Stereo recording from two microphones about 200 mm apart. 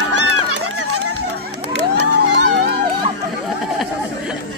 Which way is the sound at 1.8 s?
60° right (ahead or behind).